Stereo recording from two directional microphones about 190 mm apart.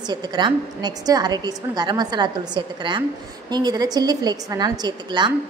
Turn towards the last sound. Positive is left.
turn(degrees=-25)  # may be behind; listen again after turning